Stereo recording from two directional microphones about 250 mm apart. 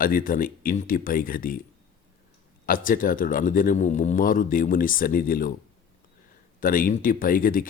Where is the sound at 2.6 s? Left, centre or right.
Left.